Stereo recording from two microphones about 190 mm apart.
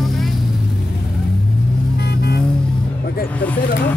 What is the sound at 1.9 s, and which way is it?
Vehicle, 60° left (ahead or behind).